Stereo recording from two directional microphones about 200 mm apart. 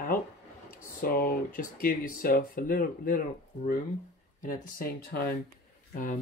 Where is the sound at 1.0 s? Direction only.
45° left (ahead or behind).